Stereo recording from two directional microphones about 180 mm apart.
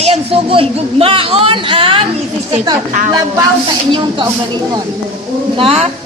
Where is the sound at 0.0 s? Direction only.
35° right (ahead or behind).